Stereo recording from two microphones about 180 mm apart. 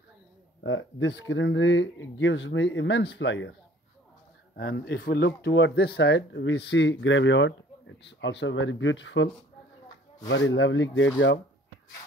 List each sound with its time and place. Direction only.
0.7 s speech: 90° left
4.6 s speech: 65° left (ahead or behind); by 11.1 s 90° left